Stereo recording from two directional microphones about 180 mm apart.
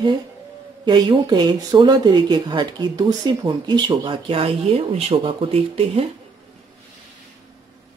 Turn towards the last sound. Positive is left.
turn(degrees=-35)  # may be behind; listen again after turning